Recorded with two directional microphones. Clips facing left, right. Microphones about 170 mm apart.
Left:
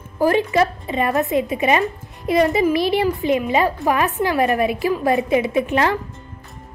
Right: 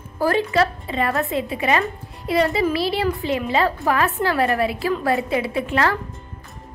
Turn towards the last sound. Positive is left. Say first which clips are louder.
# left 3 dB
turn(degrees=20)  # may be behind; listen again after turning